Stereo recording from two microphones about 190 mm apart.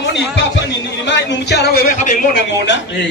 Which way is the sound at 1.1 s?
65° left (ahead or behind).